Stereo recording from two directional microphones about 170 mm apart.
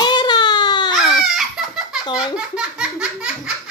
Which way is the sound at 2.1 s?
5° right (ahead or behind).